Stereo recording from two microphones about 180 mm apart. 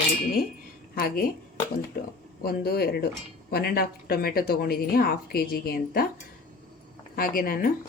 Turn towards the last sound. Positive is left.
turn(degrees=55)  # may be behind; listen again after turning